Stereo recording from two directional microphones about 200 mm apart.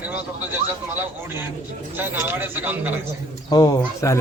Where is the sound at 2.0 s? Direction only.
10° right (ahead or behind).